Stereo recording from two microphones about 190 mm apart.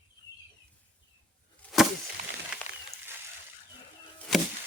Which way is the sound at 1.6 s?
5° left (ahead or behind).